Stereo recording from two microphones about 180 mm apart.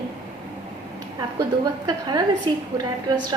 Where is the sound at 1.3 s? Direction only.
20° right (ahead or behind).